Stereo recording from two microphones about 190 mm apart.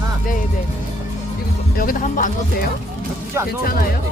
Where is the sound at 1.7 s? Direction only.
45° left (ahead or behind).